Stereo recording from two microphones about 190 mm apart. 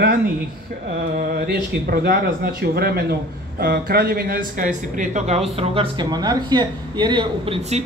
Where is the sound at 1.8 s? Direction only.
55° right (ahead or behind); by 5.4 s 40° right (ahead or behind).